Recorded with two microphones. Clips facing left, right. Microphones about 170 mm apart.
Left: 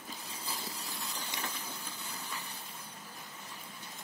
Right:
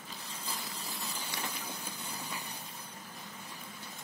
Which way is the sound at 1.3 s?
20° left (ahead or behind).